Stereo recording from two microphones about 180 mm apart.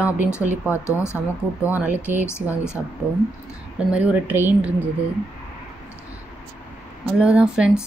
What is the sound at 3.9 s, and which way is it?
Speech, 10° right (ahead or behind).